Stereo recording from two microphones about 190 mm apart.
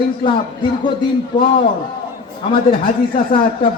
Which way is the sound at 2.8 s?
50° left (ahead or behind).